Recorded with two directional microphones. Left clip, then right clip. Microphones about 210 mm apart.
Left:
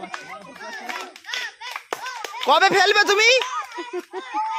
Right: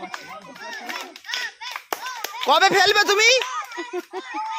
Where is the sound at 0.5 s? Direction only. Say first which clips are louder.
Even; 5° left (ahead or behind).